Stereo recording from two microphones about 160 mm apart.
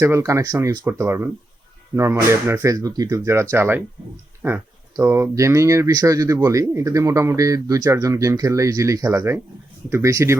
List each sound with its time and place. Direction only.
0.0 s speech: 20° right (ahead or behind)